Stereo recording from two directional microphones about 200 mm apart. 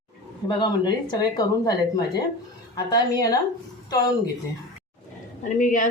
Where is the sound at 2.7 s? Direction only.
20° left (ahead or behind).